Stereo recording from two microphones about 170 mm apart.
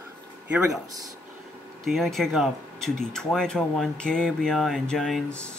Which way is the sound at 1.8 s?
Centre (ahead or behind).